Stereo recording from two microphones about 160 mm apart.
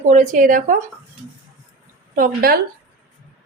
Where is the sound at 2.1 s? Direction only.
65° right (ahead or behind).